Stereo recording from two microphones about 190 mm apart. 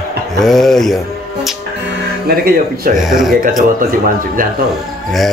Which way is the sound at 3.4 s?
45° right (ahead or behind).